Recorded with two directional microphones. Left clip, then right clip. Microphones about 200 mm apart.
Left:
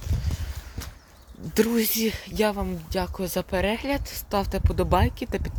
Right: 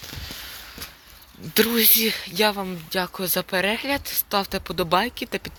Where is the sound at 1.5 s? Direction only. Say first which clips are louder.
Right 4 dB; 15° left (ahead or behind).